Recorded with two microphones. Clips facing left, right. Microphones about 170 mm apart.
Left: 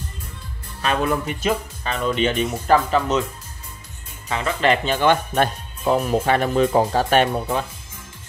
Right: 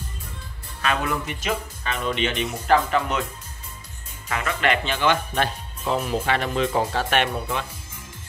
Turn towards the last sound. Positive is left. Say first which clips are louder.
# left 5 dB
turn(degrees=40)  # may be behind; listen again after turning